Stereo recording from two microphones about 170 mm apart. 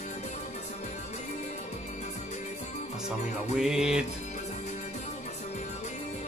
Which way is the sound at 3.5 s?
Centre (ahead or behind).